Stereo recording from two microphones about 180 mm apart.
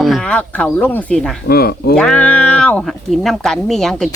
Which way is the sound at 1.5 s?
60° left (ahead or behind).